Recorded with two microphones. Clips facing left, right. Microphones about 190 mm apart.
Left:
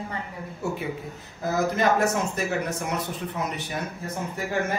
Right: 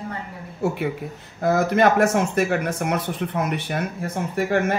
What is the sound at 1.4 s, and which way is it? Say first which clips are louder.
Speech: right 5 dB; 60° right (ahead or behind).